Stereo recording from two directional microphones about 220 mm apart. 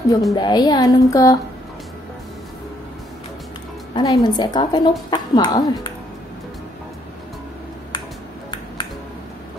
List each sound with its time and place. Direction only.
0.3 s a woman's voice: 20° left (ahead or behind)
3.9 s a woman's voice: 20° left (ahead or behind)